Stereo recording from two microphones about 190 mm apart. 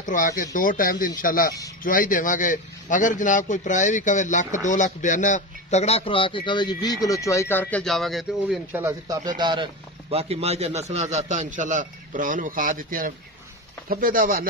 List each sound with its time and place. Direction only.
0.0 s a man's voice: 45° left (ahead or behind); by 8.8 s centre (ahead or behind)
8.8 s a man's voice: 20° right (ahead or behind); by 14.5 s 50° right (ahead or behind)